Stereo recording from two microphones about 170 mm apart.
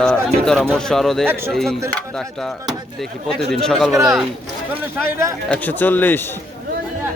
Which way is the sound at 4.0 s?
Centre (ahead or behind).